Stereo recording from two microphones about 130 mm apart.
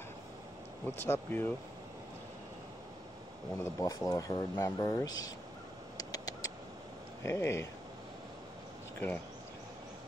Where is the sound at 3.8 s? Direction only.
25° left (ahead or behind).